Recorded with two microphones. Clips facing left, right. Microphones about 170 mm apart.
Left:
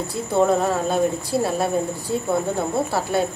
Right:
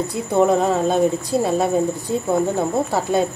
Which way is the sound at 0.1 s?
20° right (ahead or behind).